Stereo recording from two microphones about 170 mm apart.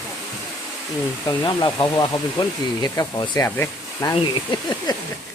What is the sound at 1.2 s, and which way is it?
Speech, 25° left (ahead or behind).